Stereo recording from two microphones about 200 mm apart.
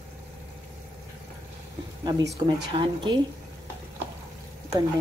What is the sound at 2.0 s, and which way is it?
Speech, 20° right (ahead or behind).